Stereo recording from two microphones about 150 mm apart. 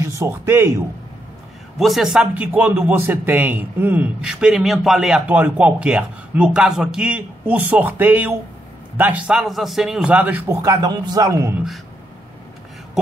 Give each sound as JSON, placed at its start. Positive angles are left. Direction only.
{"t": 0.0, "sound": "speech", "side_deg": -15}
{"t": 1.8, "sound": "a man's voice", "side_deg": 0}